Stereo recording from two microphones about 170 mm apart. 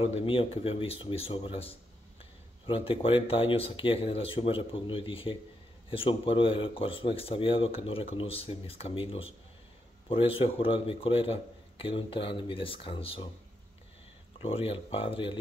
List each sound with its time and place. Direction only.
0.0 s speech: 35° left (ahead or behind)
14.4 s speech: 35° left (ahead or behind)